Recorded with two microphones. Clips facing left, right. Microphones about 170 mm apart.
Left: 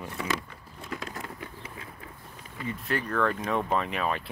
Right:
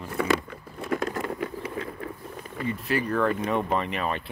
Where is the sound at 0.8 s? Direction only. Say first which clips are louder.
Right 10 dB; 55° right (ahead or behind).